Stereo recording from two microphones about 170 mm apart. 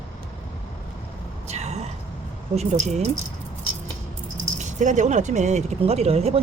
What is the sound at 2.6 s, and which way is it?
Speech, 40° right (ahead or behind).